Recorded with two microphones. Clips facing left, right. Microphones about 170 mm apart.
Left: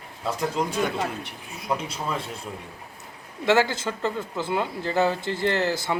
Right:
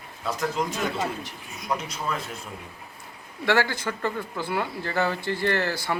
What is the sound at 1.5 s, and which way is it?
Speech, 30° left (ahead or behind).